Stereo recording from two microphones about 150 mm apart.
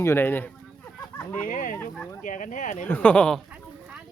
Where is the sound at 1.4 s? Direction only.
60° left (ahead or behind).